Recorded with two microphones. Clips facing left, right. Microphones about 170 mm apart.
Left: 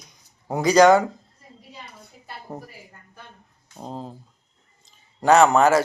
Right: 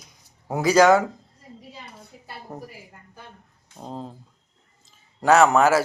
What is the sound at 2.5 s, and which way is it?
Speech, 20° left (ahead or behind).